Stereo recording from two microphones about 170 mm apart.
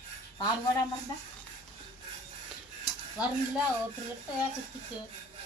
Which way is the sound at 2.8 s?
5° right (ahead or behind).